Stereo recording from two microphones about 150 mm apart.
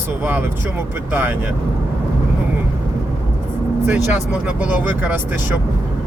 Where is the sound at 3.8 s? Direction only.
10° right (ahead or behind).